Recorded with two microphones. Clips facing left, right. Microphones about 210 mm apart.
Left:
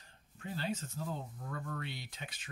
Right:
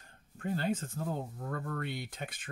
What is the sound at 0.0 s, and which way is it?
Speech, 50° right (ahead or behind).